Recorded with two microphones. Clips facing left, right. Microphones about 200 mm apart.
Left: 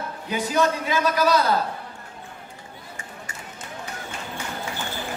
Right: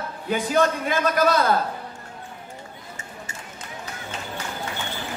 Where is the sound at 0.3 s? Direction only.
50° right (ahead or behind).